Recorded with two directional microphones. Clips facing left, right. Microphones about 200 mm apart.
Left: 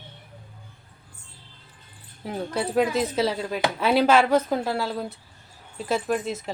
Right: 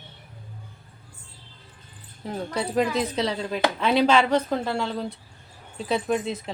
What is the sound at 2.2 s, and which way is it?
Speech, 5° left (ahead or behind).